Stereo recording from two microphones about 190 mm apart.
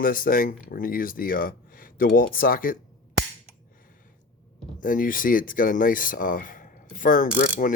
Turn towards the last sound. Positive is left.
turn(degrees=45)  # may be behind; listen again after turning